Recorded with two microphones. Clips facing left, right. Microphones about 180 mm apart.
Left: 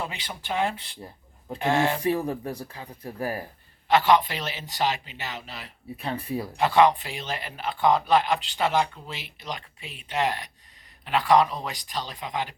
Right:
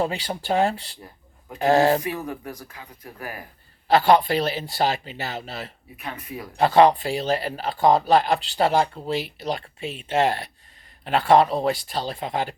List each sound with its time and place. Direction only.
0.0 s speech: 40° right (ahead or behind)
2.0 s speech: 30° left (ahead or behind)
3.8 s speech: 35° right (ahead or behind)
6.0 s speech: 30° left (ahead or behind)
6.6 s speech: 35° right (ahead or behind)